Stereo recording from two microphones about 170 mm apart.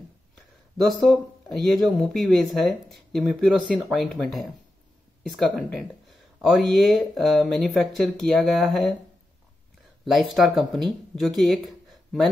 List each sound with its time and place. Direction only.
1.0 s speech: centre (ahead or behind)
10.0 s speech: centre (ahead or behind)